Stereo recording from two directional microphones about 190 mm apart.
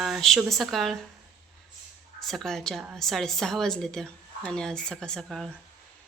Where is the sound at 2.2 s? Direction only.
Centre (ahead or behind).